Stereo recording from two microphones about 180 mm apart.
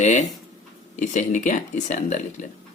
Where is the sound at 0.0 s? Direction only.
40° left (ahead or behind).